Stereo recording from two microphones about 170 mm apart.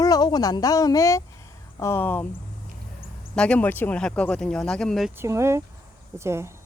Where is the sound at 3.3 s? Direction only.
5° left (ahead or behind).